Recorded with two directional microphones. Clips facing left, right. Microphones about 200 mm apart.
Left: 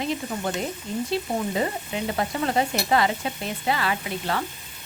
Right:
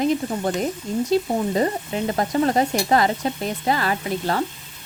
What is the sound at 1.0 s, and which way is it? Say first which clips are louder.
Stir: right 6 dB; 40° right (ahead or behind).